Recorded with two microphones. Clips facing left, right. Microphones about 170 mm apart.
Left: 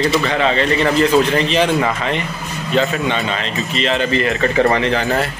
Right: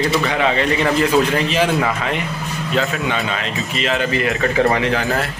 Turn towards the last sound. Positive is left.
turn(degrees=0)  # may be behind; listen again after turning